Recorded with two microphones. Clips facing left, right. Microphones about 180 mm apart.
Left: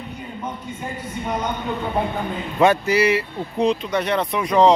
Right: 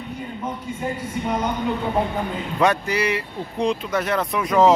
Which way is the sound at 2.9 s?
5° left (ahead or behind).